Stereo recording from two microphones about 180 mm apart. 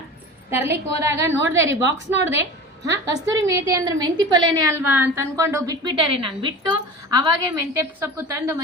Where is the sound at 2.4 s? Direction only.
15° right (ahead or behind).